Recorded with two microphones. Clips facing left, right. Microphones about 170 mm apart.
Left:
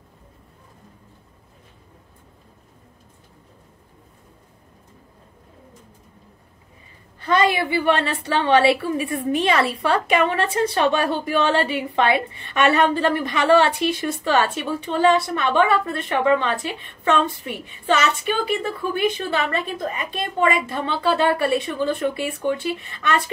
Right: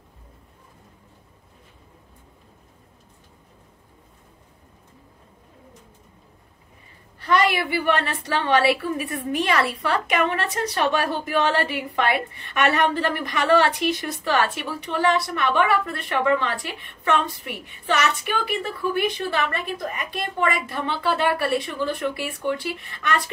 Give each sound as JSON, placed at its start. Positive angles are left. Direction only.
{"t": 7.2, "sound": "a woman's voice", "side_deg": 25}